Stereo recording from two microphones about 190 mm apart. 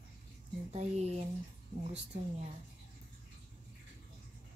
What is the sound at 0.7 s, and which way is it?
Speech, 35° right (ahead or behind).